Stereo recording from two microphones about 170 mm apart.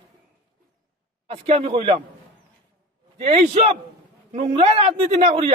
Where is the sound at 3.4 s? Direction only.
40° right (ahead or behind).